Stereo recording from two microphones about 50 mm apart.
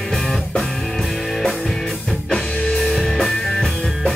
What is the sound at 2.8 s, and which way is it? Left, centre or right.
Music, centre.